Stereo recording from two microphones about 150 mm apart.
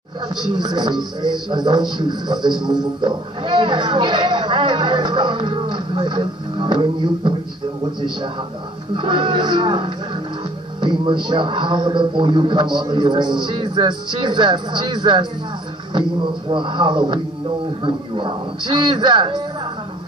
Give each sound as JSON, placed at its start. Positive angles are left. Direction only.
{"t": 0.4, "sound": "a man's voice", "side_deg": -30}
{"t": 8.9, "sound": "a man's voice", "side_deg": -30}